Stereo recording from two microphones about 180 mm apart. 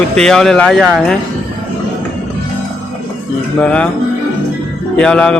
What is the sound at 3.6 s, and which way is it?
Speech, 5° left (ahead or behind).